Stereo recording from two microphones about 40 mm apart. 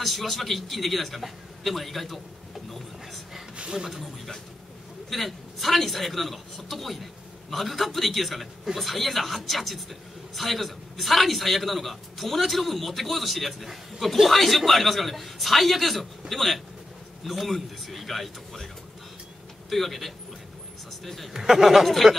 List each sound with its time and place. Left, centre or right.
0.0 s a man's voice: centre
3.5 s a sound: right
5.1 s a man's voice: centre
19.7 s a man's voice: centre
21.3 s speech: centre
21.8 s a man's voice: centre